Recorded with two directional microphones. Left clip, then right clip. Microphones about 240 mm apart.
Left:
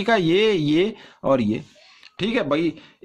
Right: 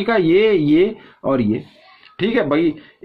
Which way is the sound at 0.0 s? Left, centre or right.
Left.